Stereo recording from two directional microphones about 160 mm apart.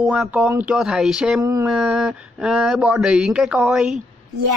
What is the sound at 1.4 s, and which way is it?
Speech, 20° right (ahead or behind).